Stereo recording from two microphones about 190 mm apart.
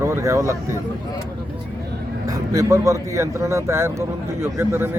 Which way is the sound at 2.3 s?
15° right (ahead or behind).